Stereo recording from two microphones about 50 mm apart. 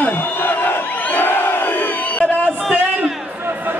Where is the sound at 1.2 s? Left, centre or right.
Left.